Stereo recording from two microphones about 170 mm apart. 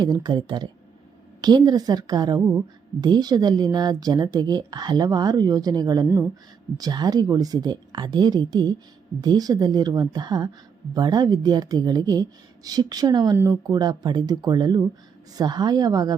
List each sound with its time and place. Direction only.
0.0 s a woman's voice: 25° right (ahead or behind)